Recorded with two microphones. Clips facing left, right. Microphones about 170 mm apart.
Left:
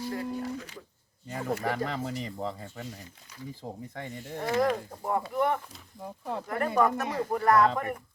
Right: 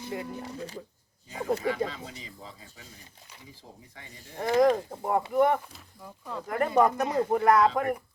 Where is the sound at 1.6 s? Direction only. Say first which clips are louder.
Right 1 dB; 60° left (ahead or behind).